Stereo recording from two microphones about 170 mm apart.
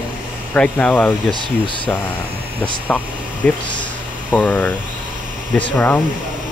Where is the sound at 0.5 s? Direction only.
5° left (ahead or behind).